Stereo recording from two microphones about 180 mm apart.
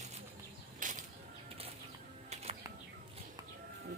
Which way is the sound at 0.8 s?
45° right (ahead or behind).